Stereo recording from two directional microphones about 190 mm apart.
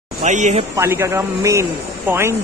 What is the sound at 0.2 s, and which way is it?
Speech, 40° right (ahead or behind).